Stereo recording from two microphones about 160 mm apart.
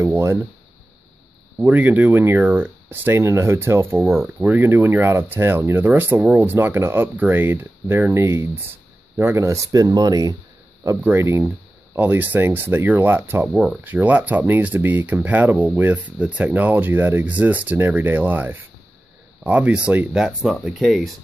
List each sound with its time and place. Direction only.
0.0 s speech: 15° right (ahead or behind)
1.6 s speech: 10° right (ahead or behind)